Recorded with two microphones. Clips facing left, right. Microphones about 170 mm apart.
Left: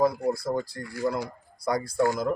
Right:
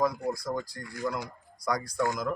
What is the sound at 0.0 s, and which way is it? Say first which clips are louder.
A man's voice: left 4 dB; 30° left (ahead or behind).